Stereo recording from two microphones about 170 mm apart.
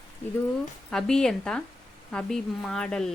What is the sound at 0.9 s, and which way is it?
Speech, 5° left (ahead or behind).